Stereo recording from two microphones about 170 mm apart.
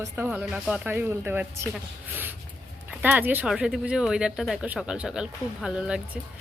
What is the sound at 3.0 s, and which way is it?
A woman's voice, 10° right (ahead or behind).